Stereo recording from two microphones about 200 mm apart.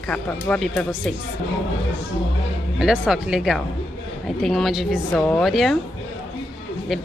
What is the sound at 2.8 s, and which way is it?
Speech, 5° right (ahead or behind).